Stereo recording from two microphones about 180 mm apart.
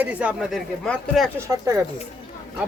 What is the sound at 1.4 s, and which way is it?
Speech, 20° right (ahead or behind).